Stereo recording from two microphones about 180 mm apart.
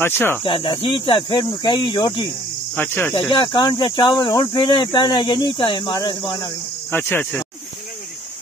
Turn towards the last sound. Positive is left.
turn(degrees=10)  # may be behind; listen again after turning